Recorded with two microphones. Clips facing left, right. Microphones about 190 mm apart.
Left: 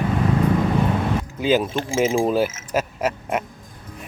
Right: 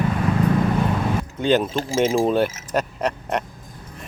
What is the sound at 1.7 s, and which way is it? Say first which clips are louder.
Speech: right 1 dB; 40° right (ahead or behind).